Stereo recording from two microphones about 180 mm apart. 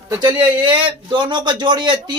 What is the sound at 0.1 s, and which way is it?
Speech, 25° right (ahead or behind).